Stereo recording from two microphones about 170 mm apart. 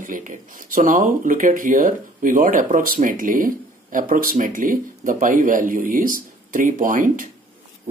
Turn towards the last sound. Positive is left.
turn(degrees=-50)  # may be behind; listen again after turning